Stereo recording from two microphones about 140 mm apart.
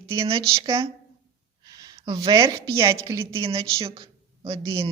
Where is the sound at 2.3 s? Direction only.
25° right (ahead or behind).